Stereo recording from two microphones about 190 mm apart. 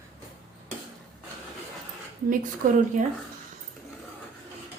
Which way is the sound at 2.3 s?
40° right (ahead or behind).